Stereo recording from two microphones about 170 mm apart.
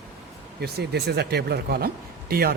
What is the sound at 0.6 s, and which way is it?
A man's voice, 70° right (ahead or behind).